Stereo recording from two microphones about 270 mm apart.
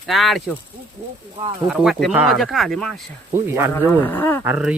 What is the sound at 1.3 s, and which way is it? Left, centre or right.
Speech, centre.